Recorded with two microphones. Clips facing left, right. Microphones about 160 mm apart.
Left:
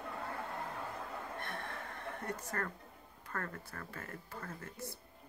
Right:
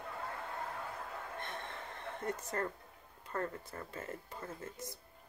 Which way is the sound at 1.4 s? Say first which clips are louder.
Left 1 dB; 20° right (ahead or behind).